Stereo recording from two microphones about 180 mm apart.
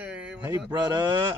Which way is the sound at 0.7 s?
25° right (ahead or behind).